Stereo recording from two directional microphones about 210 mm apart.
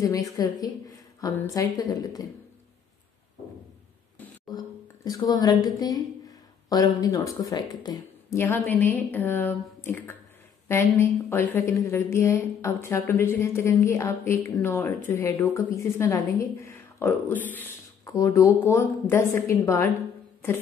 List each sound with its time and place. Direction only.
0.0 s a woman's voice: 15° left (ahead or behind)
5.0 s a woman's voice: 20° left (ahead or behind)